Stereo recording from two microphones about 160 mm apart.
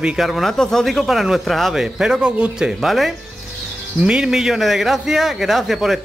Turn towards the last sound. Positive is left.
turn(degrees=0)  # may be behind; listen again after turning